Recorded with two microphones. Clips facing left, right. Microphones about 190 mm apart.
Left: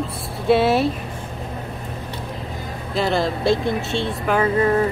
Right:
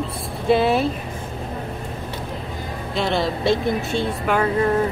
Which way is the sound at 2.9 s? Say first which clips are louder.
Left 1 dB; centre (ahead or behind).